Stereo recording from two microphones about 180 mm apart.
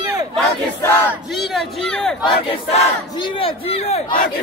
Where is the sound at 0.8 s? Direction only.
15° left (ahead or behind).